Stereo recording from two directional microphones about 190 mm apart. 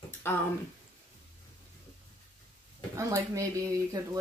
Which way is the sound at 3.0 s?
15° right (ahead or behind).